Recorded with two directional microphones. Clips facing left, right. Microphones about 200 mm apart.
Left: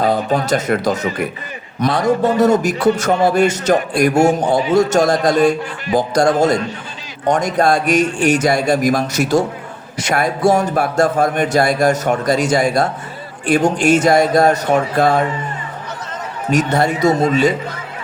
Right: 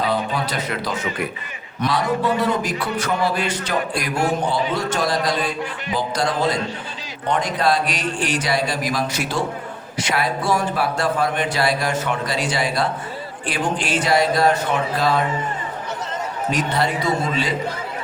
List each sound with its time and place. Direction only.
0.0 s speech: 45° left (ahead or behind)
16.5 s speech: 45° left (ahead or behind)